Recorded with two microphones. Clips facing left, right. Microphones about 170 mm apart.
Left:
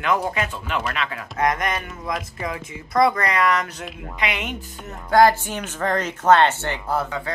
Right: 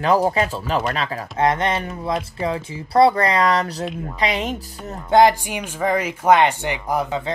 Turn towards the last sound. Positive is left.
turn(degrees=-20)  # may be behind; listen again after turning